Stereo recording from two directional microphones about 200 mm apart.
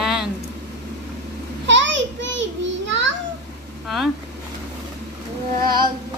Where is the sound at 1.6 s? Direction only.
65° right (ahead or behind).